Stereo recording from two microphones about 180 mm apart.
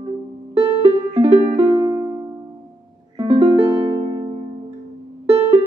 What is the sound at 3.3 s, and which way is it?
Music, 35° right (ahead or behind).